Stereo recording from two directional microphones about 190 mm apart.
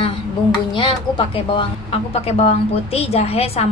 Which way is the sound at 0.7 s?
25° left (ahead or behind).